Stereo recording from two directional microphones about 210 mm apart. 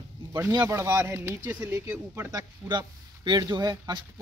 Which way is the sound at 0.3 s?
15° right (ahead or behind).